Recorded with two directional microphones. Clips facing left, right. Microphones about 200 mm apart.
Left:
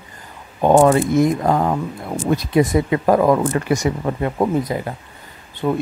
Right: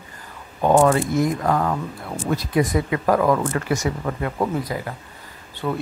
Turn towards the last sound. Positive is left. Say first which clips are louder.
# left 5 dB
turn(degrees=20)  # may be behind; listen again after turning